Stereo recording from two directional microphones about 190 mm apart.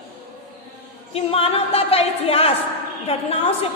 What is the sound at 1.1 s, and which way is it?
A woman's voice, 30° left (ahead or behind).